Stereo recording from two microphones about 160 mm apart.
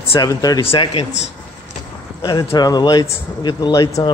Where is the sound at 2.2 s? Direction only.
25° left (ahead or behind).